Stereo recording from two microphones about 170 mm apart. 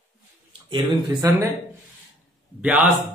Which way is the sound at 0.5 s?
30° right (ahead or behind).